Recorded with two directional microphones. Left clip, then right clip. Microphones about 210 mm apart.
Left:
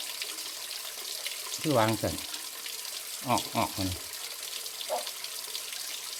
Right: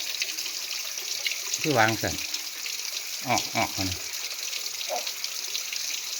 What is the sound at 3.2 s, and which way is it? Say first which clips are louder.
Speech: right 3 dB; 10° left (ahead or behind).